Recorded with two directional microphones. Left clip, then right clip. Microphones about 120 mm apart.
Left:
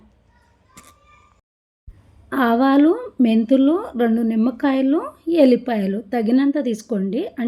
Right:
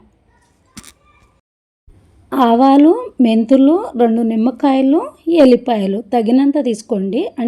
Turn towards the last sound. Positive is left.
turn(degrees=-25)  # may be behind; listen again after turning